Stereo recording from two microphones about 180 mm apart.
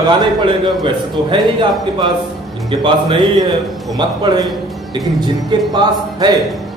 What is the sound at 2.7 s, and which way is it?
A man's voice, 25° right (ahead or behind).